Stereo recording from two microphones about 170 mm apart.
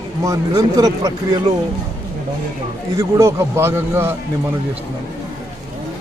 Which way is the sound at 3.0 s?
15° right (ahead or behind).